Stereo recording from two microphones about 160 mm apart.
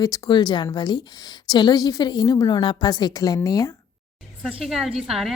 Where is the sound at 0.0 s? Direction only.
25° left (ahead or behind).